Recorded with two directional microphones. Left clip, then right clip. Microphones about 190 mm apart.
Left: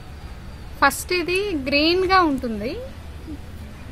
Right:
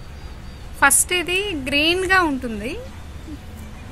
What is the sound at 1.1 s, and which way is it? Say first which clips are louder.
A woman's voice: right 1 dB; 70° left (ahead or behind).